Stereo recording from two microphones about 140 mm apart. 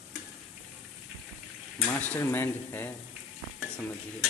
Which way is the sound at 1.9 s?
10° left (ahead or behind).